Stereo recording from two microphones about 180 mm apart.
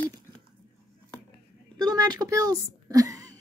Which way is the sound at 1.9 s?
20° right (ahead or behind).